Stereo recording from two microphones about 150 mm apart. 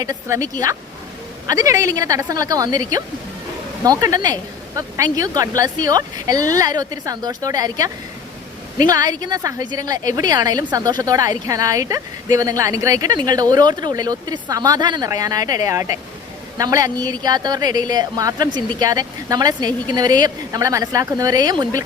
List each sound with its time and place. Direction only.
0.0 s a woman's voice: 20° right (ahead or behind)
1.5 s a woman's voice: 20° right (ahead or behind)